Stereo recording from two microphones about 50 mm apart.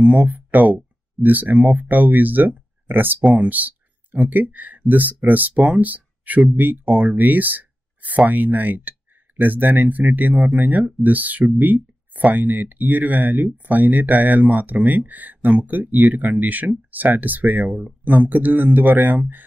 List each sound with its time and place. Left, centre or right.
0.0 s speech: right